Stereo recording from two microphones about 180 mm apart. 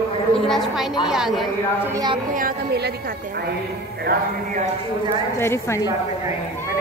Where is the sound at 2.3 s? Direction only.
55° right (ahead or behind).